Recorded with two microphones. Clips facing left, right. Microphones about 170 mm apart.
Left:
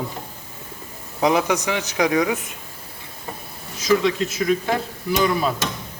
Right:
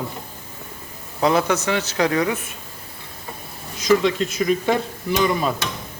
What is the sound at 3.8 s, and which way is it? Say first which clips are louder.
A man's voice: right 1 dB; centre (ahead or behind).